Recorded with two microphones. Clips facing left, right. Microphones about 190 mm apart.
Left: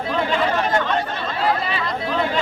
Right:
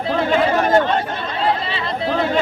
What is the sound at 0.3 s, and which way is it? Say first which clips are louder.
Chatter: right 6 dB; 50° right (ahead or behind).